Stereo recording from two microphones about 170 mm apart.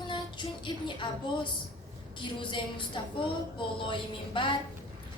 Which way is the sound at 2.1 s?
30° left (ahead or behind).